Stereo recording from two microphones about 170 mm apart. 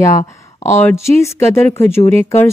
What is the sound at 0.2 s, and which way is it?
Speech, 40° left (ahead or behind).